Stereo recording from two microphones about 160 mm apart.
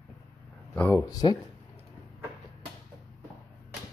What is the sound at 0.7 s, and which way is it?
Speech, 10° left (ahead or behind).